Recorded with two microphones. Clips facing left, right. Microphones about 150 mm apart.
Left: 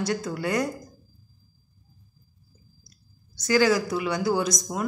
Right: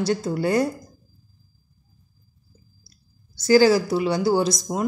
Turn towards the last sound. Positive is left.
turn(degrees=-30)  # may be behind; listen again after turning